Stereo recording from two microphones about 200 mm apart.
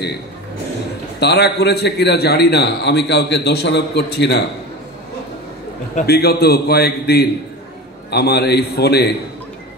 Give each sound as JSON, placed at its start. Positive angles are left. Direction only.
{"t": 1.2, "sound": "a man's voice", "side_deg": 55}
{"t": 5.9, "sound": "a man's voice", "side_deg": 50}